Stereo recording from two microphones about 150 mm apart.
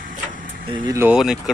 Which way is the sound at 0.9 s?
15° right (ahead or behind).